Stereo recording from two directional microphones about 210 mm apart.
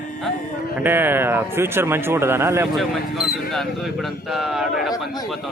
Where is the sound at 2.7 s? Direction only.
Centre (ahead or behind).